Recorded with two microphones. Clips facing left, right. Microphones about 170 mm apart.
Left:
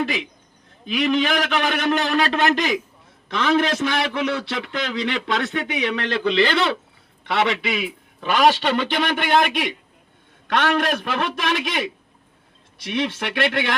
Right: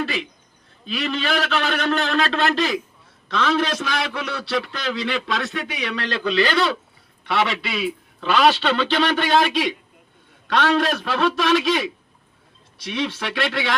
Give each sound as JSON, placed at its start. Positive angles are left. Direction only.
{"t": 0.0, "sound": "a man's voice", "side_deg": 15}
{"t": 13.1, "sound": "a man's voice", "side_deg": 20}